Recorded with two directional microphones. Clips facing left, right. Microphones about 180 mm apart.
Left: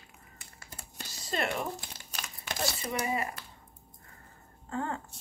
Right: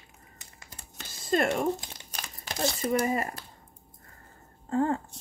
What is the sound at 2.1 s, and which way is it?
Crumpling, 40° right (ahead or behind).